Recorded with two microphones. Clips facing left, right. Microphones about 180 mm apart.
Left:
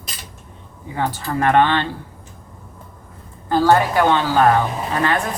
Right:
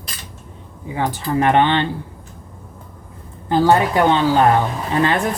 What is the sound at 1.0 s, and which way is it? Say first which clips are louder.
Speech: right 2 dB; 15° right (ahead or behind).